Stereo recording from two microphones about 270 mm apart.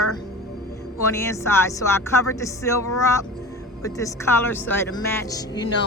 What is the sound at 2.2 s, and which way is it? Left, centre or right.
A woman's voice, centre.